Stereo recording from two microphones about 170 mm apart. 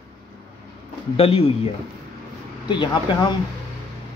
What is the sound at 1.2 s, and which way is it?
Speech, 35° left (ahead or behind).